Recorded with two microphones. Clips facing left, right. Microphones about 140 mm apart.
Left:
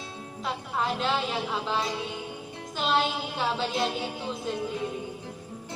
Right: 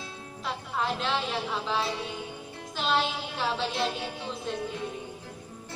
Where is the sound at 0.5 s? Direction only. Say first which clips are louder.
Left 1 dB; centre (ahead or behind).